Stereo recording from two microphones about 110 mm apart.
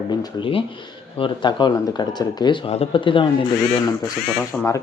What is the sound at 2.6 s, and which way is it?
Speech, 60° left (ahead or behind).